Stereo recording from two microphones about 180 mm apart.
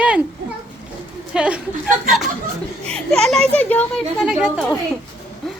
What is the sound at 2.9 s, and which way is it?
Speech, 5° left (ahead or behind).